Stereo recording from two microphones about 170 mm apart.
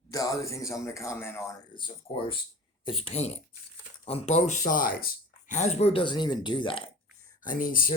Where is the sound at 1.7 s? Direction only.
30° left (ahead or behind); by 5.0 s 55° left (ahead or behind).